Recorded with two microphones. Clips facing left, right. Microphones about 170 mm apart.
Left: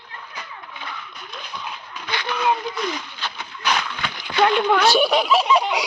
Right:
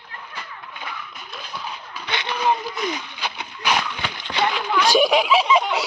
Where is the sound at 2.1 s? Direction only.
20° right (ahead or behind).